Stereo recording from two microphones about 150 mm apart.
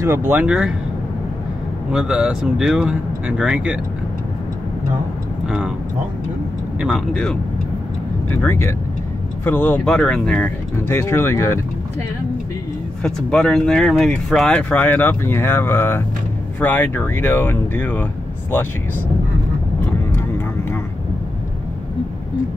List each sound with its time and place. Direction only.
0.0 s speech: 15° right (ahead or behind)
1.9 s speech: 5° right (ahead or behind)
6.8 s speech: 5° left (ahead or behind)
8.4 s speech: 15° left (ahead or behind)
13.0 s speech: 5° left (ahead or behind)